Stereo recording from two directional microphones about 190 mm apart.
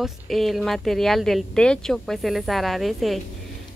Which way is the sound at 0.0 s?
Centre (ahead or behind).